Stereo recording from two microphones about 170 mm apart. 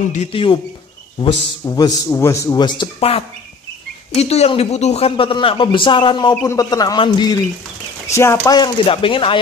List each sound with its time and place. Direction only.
0.1 s a man's voice: 35° left (ahead or behind)